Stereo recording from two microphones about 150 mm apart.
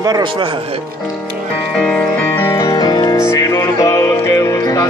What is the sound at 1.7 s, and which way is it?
Music, 5° left (ahead or behind).